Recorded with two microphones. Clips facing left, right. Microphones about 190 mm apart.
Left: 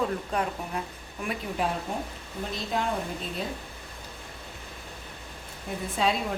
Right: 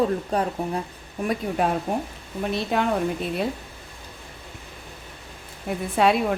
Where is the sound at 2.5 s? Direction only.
65° right (ahead or behind).